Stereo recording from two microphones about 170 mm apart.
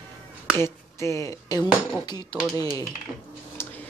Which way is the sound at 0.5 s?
15° left (ahead or behind).